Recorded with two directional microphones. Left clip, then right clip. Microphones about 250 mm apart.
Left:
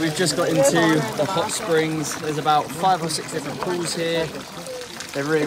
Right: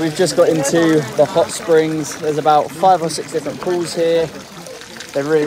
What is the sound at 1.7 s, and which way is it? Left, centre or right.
Speech, centre.